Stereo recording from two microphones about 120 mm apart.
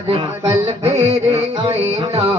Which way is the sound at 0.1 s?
60° right (ahead or behind).